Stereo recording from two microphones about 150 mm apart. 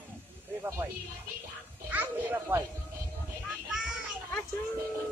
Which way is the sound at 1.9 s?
15° right (ahead or behind).